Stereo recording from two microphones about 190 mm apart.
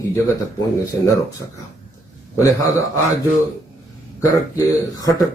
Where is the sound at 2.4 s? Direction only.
15° left (ahead or behind).